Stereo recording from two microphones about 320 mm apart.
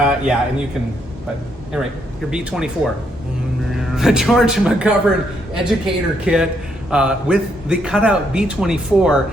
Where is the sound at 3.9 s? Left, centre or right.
Centre.